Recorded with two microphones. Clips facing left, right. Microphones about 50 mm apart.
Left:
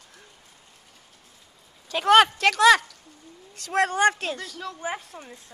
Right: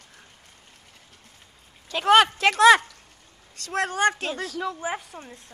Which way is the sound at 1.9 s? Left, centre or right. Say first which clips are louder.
Left 1 dB; centre.